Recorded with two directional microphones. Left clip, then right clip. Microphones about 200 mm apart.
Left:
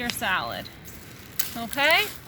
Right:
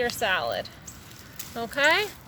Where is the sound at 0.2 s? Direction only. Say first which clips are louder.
Right 1 dB; 10° right (ahead or behind).